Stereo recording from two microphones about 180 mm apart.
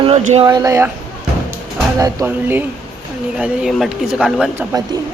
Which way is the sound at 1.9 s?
15° right (ahead or behind).